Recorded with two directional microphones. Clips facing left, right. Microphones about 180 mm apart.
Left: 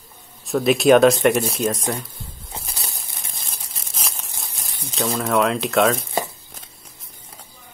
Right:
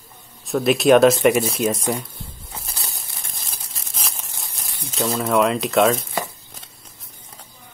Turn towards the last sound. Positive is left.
turn(degrees=0)  # may be behind; listen again after turning